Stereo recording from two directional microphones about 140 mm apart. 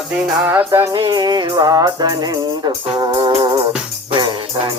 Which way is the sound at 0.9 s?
30° right (ahead or behind).